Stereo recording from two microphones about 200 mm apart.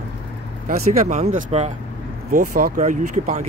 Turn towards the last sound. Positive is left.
turn(degrees=-40)  # may be behind; listen again after turning